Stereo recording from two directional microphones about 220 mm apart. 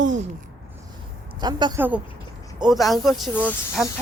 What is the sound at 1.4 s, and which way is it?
Speech, 20° right (ahead or behind).